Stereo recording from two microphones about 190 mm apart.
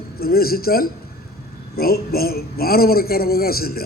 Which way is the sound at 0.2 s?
50° left (ahead or behind).